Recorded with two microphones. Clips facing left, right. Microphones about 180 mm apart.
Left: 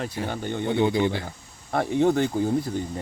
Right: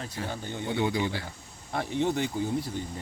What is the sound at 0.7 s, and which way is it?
Speech, 25° left (ahead or behind).